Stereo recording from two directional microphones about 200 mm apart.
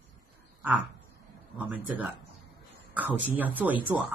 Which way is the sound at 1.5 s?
5° right (ahead or behind).